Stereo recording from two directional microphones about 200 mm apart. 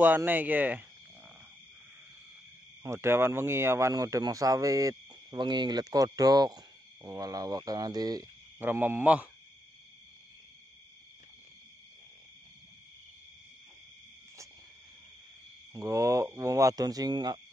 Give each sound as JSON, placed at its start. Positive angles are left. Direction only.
{"t": 0.0, "sound": "speech", "side_deg": -10}
{"t": 2.8, "sound": "speech", "side_deg": -15}
{"t": 15.7, "sound": "speech", "side_deg": -15}